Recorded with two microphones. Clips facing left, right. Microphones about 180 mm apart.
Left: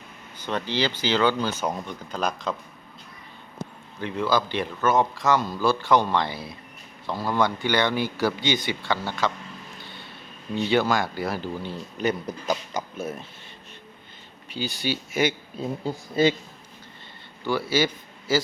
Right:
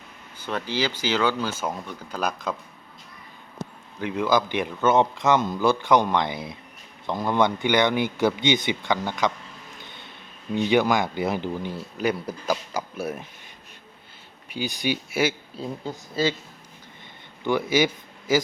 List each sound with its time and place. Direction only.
0.3 s speech: 10° right (ahead or behind)
4.0 s speech: 15° right (ahead or behind)
9.7 s a sound: 20° right (ahead or behind)
10.5 s speech: 15° right (ahead or behind)
14.5 s speech: 15° right (ahead or behind)
17.4 s a man's voice: 20° right (ahead or behind)